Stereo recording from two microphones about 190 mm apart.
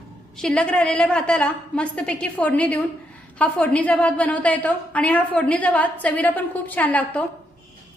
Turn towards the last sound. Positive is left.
turn(degrees=5)  # may be behind; listen again after turning